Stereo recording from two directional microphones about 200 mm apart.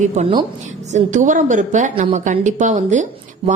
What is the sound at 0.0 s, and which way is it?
Speech, 35° right (ahead or behind).